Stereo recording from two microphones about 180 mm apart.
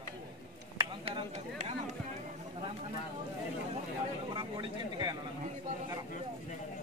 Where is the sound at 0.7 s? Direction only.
30° right (ahead or behind).